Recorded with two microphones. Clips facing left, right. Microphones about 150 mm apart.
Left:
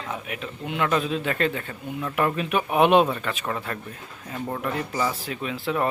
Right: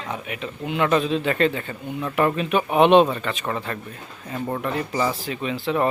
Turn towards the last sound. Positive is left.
turn(degrees=0)  # may be behind; listen again after turning